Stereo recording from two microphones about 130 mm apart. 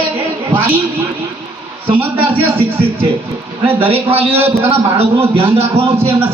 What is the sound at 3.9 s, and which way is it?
A man's voice, 50° right (ahead or behind).